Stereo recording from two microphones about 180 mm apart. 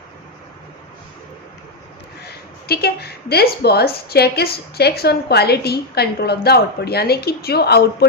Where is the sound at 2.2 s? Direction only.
60° left (ahead or behind).